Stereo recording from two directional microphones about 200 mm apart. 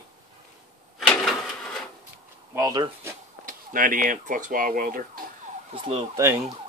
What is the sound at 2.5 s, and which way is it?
Speech, 20° right (ahead or behind).